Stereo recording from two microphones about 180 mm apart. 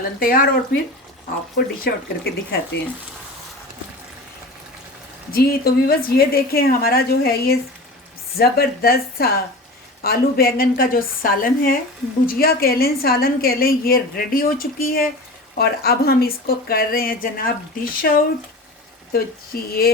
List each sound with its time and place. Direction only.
0.2 s a woman's voice: 50° left (ahead or behind)
1.5 s a woman's voice: 60° left (ahead or behind)
5.3 s a woman's voice: 55° left (ahead or behind)
19.5 s a woman's voice: 55° left (ahead or behind)